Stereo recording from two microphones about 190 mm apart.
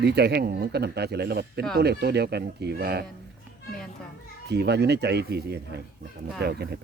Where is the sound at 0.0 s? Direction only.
60° right (ahead or behind).